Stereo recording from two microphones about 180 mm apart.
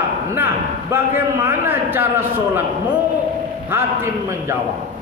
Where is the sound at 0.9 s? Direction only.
10° right (ahead or behind).